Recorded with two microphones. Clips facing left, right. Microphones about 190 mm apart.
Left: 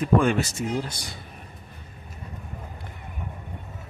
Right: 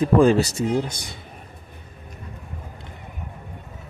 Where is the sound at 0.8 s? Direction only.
20° right (ahead or behind).